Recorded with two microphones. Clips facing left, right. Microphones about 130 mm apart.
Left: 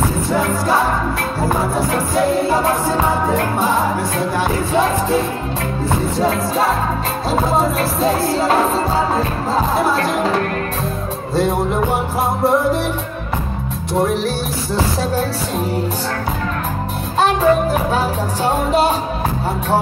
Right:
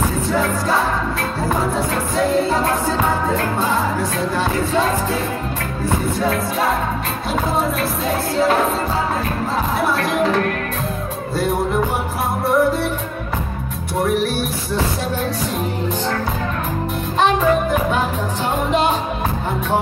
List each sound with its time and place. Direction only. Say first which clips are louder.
0.3 s music: left 2 dB; 15° left (ahead or behind)
1.9 s music: left 2 dB; 10° left (ahead or behind)
6.1 s music: left 3 dB; 30° left (ahead or behind)
8.0 s music: left 2 dB; 35° left (ahead or behind)
17.2 s music: left 2 dB; 35° left (ahead or behind)